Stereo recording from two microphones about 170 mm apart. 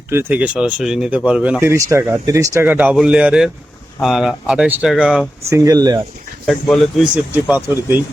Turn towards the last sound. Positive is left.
turn(degrees=-15)  # may be behind; listen again after turning